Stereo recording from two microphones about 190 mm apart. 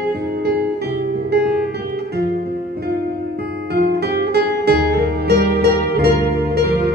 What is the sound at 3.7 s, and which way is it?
Music, 55° right (ahead or behind).